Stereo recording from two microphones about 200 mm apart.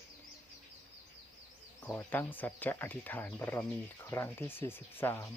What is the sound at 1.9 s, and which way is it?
Speech, 10° left (ahead or behind).